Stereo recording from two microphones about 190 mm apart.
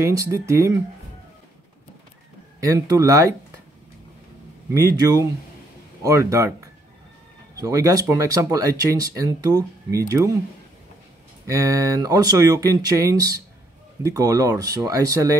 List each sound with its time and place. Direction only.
0.0 s speech: 15° right (ahead or behind)
2.6 s speech: 15° right (ahead or behind)
4.7 s speech: 15° right (ahead or behind)
11.4 s speech: 15° right (ahead or behind)